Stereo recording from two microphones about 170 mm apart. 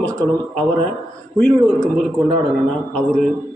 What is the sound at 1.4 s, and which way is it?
Speech, 10° left (ahead or behind).